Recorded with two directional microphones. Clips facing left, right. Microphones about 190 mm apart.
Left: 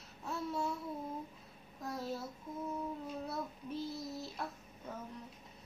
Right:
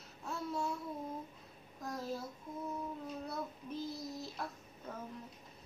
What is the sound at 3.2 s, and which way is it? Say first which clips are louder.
A child's voice: left 1 dB; centre (ahead or behind).